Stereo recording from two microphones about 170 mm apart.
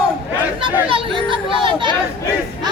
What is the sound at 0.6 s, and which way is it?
Chatter, 30° right (ahead or behind).